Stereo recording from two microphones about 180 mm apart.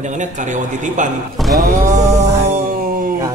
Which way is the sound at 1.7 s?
45° right (ahead or behind).